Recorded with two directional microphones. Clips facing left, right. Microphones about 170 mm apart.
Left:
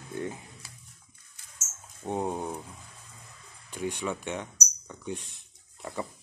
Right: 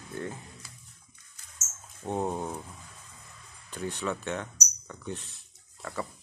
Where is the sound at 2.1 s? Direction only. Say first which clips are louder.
Even; 10° left (ahead or behind).